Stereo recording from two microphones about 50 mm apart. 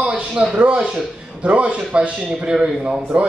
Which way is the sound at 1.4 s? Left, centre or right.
Right.